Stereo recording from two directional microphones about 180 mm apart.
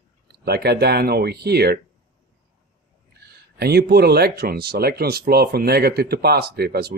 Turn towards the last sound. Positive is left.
turn(degrees=-60)  # may be behind; listen again after turning